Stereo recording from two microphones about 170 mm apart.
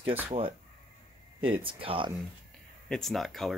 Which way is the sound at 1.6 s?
30° right (ahead or behind).